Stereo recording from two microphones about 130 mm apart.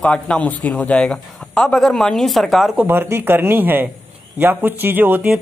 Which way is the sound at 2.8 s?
15° right (ahead or behind).